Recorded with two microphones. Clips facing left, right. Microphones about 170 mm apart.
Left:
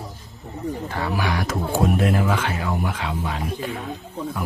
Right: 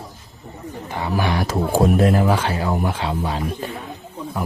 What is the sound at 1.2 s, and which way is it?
Speech, 30° right (ahead or behind).